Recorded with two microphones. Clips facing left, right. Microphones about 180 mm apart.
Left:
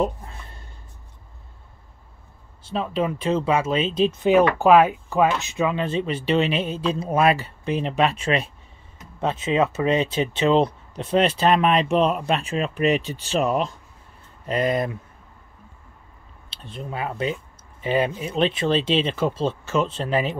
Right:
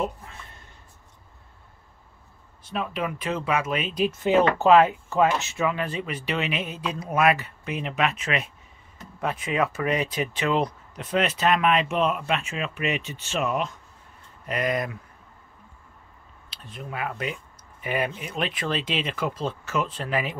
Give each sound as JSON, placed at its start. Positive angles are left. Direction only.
{"t": 0.0, "sound": "a sound", "side_deg": 35}
{"t": 2.6, "sound": "speech", "side_deg": 30}
{"t": 16.4, "sound": "speech", "side_deg": 30}